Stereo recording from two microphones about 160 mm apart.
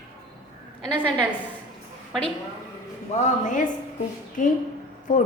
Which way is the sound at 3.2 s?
45° left (ahead or behind).